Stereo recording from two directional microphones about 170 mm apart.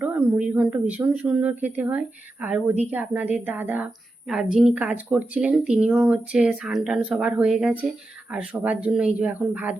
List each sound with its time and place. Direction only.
0.0 s a woman's voice: 5° right (ahead or behind)